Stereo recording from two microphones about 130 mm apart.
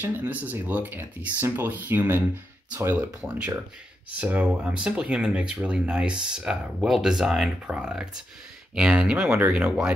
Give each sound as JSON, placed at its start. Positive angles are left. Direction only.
{"t": 0.0, "sound": "speech", "side_deg": -15}